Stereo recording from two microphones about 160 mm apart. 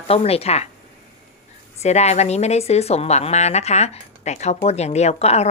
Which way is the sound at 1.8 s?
45° left (ahead or behind).